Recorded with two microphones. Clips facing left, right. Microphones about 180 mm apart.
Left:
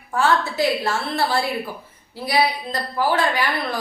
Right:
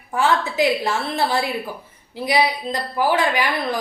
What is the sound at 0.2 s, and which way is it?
A woman's voice, 15° right (ahead or behind).